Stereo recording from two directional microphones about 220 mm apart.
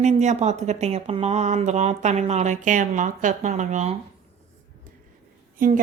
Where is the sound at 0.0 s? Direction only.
30° right (ahead or behind).